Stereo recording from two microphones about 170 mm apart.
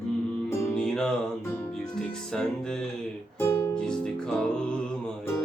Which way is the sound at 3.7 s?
5° left (ahead or behind).